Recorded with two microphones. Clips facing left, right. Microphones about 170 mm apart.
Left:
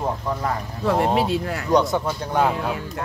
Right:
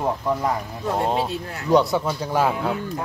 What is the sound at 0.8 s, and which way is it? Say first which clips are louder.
Speech: left 3 dB; 90° left.